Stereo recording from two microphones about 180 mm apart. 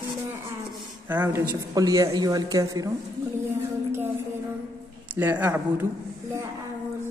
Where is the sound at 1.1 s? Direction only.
10° right (ahead or behind).